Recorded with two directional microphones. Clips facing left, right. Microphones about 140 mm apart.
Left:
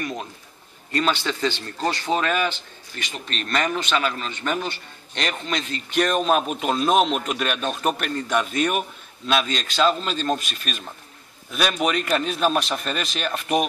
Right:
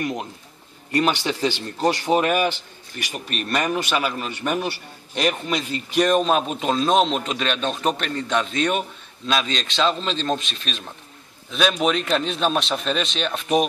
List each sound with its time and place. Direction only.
0.0 s a man's voice: 15° right (ahead or behind); by 10.8 s 5° left (ahead or behind)
11.8 s speech: 5° left (ahead or behind)